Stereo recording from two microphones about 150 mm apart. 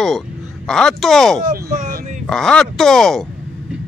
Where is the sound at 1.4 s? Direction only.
70° right (ahead or behind).